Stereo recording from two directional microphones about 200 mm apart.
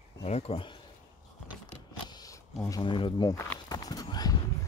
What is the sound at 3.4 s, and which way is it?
Clip-clop, 15° left (ahead or behind).